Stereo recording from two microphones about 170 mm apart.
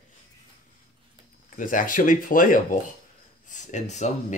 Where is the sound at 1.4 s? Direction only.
50° left (ahead or behind).